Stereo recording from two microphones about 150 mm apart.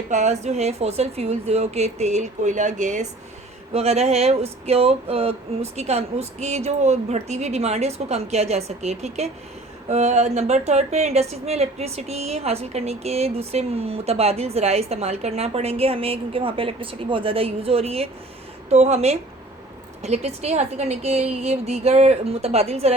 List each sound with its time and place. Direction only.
0.1 s a woman's voice: 50° right (ahead or behind)
3.7 s a woman's voice: 45° right (ahead or behind)